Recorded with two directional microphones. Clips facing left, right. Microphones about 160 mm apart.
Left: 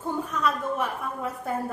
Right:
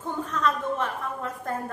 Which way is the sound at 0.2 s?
10° left (ahead or behind).